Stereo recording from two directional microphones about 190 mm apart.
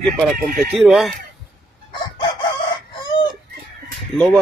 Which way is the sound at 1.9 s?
25° left (ahead or behind).